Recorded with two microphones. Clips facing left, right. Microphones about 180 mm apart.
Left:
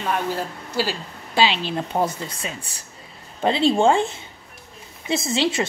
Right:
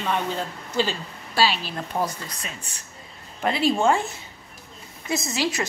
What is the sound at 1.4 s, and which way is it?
A woman's voice, 25° left (ahead or behind).